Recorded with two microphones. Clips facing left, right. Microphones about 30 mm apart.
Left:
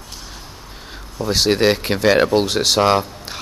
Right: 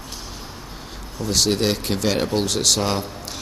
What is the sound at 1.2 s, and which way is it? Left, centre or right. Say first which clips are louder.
Speech: left 4 dB; left.